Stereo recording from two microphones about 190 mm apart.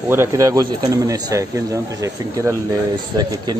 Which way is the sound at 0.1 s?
15° right (ahead or behind).